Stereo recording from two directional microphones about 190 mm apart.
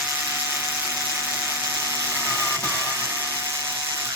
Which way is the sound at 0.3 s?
10° right (ahead or behind).